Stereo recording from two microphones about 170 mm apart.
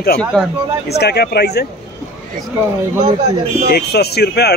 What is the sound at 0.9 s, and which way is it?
Speech, 75° left (ahead or behind).